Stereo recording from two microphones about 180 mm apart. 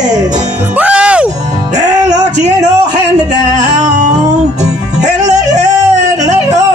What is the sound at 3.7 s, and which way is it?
Music, 40° right (ahead or behind).